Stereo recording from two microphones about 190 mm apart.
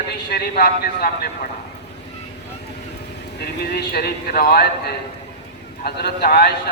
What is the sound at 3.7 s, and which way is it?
Speech, 55° left (ahead or behind).